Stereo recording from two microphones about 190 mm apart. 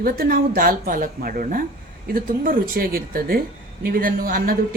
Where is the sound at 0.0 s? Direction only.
50° right (ahead or behind).